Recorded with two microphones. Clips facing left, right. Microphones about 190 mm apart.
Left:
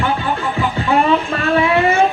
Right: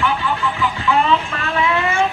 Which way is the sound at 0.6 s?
50° left (ahead or behind).